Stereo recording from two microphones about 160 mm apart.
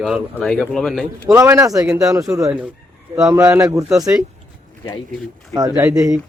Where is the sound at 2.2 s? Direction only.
20° right (ahead or behind).